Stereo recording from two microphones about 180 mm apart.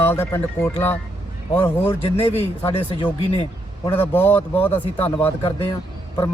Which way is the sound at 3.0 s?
30° left (ahead or behind).